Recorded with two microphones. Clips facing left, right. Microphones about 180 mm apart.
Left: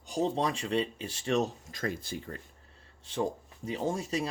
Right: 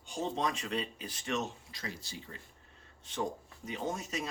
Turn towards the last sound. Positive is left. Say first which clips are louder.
# left 5 dB
turn(degrees=30)  # may be behind; listen again after turning